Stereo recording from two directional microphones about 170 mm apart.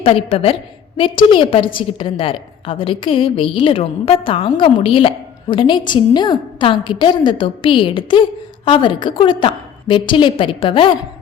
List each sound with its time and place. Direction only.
0.0 s a woman's voice: 35° left (ahead or behind)